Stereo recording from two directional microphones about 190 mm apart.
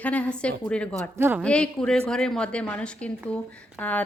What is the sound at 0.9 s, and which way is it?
Speech, 10° right (ahead or behind).